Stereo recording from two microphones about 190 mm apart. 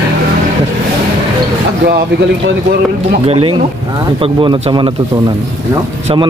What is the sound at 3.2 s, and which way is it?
Speech, 30° right (ahead or behind).